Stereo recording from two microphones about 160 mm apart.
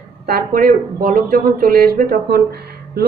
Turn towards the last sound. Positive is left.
turn(degrees=-75)  # may be behind; listen again after turning